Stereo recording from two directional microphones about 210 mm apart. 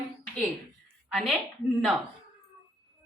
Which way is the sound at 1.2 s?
5° left (ahead or behind).